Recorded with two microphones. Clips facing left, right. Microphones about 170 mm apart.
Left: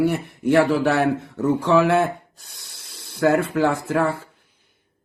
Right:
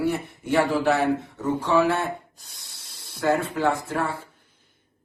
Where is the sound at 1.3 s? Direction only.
70° left (ahead or behind); by 4.0 s 90° left.